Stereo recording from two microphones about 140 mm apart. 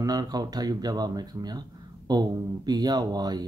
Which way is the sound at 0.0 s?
25° right (ahead or behind).